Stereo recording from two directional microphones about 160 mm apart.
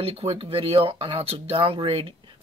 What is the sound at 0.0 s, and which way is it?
Speech, 35° right (ahead or behind).